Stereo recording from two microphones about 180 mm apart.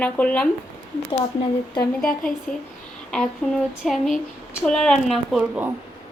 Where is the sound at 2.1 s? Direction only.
50° left (ahead or behind).